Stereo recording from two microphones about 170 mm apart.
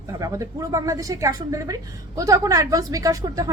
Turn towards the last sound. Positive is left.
turn(degrees=-20)  # may be behind; listen again after turning